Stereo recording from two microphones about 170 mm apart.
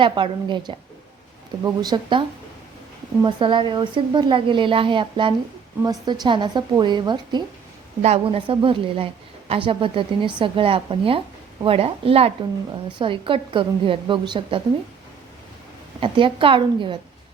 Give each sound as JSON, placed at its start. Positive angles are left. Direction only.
{"t": 0.0, "sound": "a woman's voice", "side_deg": -30}
{"t": 3.2, "sound": "a woman's voice", "side_deg": -30}
{"t": 8.0, "sound": "a woman's voice", "side_deg": -35}
{"t": 16.0, "sound": "a woman's voice", "side_deg": -30}